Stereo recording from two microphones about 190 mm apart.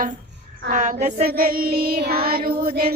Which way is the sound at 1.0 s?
50° right (ahead or behind).